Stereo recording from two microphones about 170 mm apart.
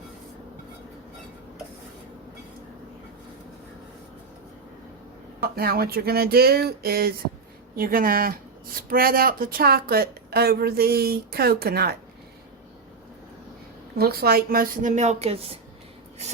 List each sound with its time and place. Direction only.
5.4 s speech: 65° right (ahead or behind)
14.0 s a woman's voice: 65° right (ahead or behind); by 15.5 s 35° right (ahead or behind)